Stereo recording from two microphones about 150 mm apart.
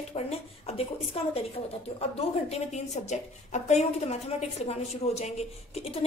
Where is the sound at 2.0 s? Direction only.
45° left (ahead or behind).